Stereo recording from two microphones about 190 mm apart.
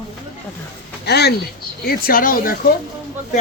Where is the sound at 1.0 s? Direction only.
60° left (ahead or behind).